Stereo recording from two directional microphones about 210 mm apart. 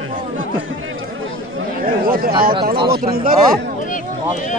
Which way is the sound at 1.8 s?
45° right (ahead or behind).